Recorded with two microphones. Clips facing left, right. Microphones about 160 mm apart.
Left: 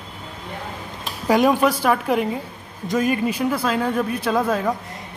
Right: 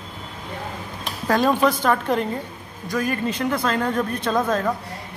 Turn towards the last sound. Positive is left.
turn(degrees=10)  # may be behind; listen again after turning